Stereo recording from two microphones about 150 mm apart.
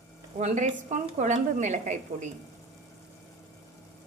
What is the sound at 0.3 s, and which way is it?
A woman's voice, 50° right (ahead or behind).